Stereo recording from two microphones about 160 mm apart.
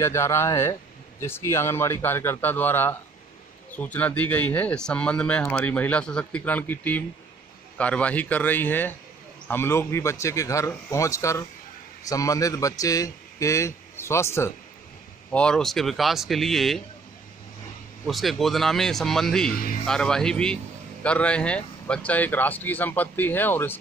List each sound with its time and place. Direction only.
0.0 s a man's voice: 15° left (ahead or behind)
15.3 s speech: 5° left (ahead or behind)
18.0 s speech: centre (ahead or behind)
19.5 s speech: 65° left (ahead or behind)
19.9 s speech: 5° left (ahead or behind)